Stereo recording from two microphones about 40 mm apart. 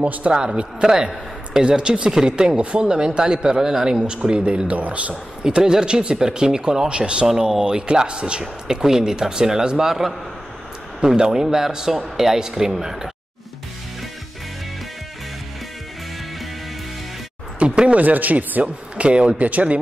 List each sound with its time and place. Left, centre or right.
0.0 s a man's voice: right
4.4 s speech: right
5.4 s a man's voice: centre
7.2 s speech: centre
17.6 s speech: right
18.0 s speech: right